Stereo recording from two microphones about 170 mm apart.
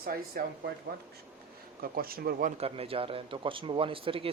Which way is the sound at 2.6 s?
35° right (ahead or behind).